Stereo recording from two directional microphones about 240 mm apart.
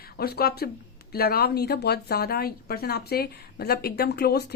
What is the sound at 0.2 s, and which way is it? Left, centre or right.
Speech, left.